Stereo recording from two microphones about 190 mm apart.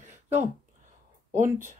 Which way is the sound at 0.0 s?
35° right (ahead or behind).